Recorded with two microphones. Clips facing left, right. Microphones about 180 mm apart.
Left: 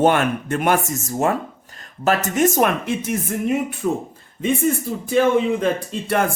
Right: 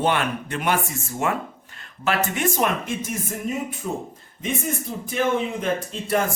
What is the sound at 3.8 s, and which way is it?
Speech, 75° left (ahead or behind).